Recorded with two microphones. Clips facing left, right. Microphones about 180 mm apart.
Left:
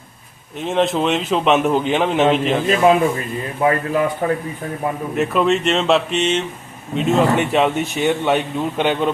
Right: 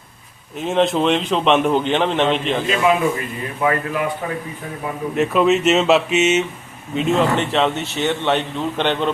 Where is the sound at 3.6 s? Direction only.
30° left (ahead or behind).